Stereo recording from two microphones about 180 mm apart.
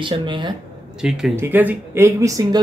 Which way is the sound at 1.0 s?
5° right (ahead or behind).